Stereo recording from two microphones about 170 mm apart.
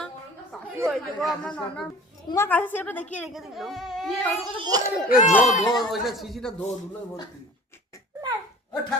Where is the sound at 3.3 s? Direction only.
Centre (ahead or behind).